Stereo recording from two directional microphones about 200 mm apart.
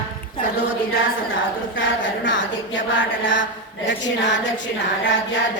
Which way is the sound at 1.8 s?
65° left (ahead or behind).